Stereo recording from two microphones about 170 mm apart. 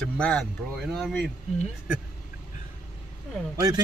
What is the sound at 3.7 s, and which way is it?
Speech, 20° right (ahead or behind).